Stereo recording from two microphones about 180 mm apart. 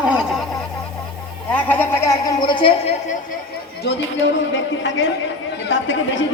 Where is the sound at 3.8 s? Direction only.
80° left.